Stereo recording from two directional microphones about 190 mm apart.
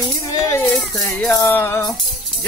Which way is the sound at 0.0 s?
15° left (ahead or behind).